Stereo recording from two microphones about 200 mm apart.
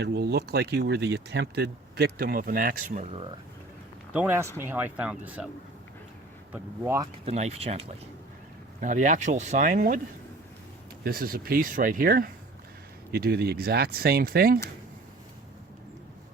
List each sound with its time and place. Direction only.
0.0 s speech: 55° right (ahead or behind); by 3.2 s 30° right (ahead or behind)
4.1 s speech: 10° right (ahead or behind)
6.5 s speech: 10° right (ahead or behind)
7.3 s speech: 30° right (ahead or behind)
11.0 s speech: 50° right (ahead or behind)